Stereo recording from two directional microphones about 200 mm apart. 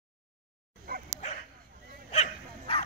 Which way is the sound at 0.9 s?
50° right (ahead or behind).